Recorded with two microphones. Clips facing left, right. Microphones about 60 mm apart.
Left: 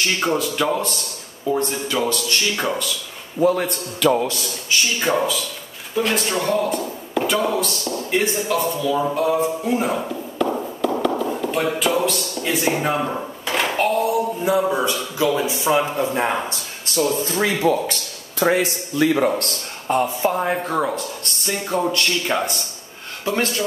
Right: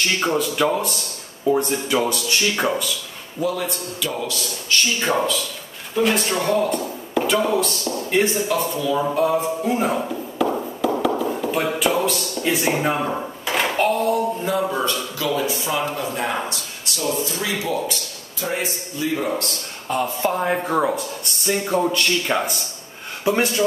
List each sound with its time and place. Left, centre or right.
0.0 s speech: centre
3.3 s a man's voice: left
3.6 s speech: left
4.7 s speech: centre; by 17.9 s left
18.4 s a man's voice: left
19.2 s speech: left
20.2 s speech: centre